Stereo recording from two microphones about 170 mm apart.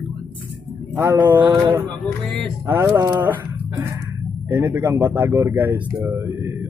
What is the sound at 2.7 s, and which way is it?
Speech, 15° right (ahead or behind).